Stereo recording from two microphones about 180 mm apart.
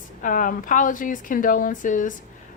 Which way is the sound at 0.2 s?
45° left (ahead or behind).